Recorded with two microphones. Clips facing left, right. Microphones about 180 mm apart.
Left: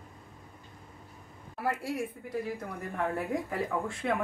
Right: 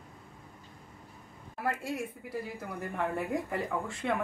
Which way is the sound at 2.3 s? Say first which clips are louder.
Left 3 dB; centre (ahead or behind).